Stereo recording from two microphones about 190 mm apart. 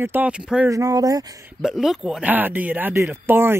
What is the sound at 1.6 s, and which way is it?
Speech, centre (ahead or behind).